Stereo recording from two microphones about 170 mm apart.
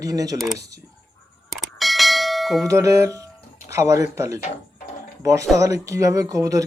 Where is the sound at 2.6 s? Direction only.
20° right (ahead or behind).